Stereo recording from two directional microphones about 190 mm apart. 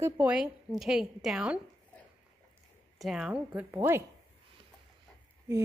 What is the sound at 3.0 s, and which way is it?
A woman's voice, centre (ahead or behind).